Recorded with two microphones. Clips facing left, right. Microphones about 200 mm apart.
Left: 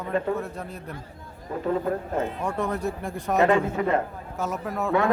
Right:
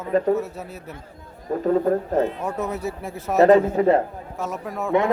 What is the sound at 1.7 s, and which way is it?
Speech, 40° right (ahead or behind).